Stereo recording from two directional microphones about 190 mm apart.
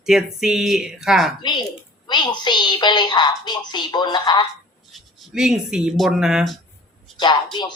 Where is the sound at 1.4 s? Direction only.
20° left (ahead or behind).